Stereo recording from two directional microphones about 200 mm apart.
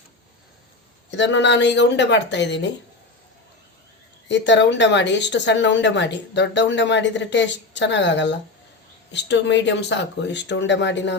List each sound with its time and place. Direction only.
1.1 s a woman's voice: 60° left (ahead or behind)
4.3 s a woman's voice: 60° left (ahead or behind)